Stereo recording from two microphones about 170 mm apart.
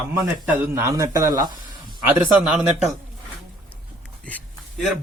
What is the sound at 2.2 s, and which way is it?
Speech, 5° right (ahead or behind).